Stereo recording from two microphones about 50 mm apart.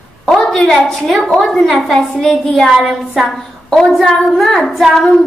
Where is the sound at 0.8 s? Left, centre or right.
Centre.